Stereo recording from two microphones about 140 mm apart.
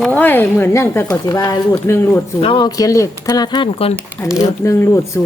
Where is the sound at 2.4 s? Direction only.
35° left (ahead or behind).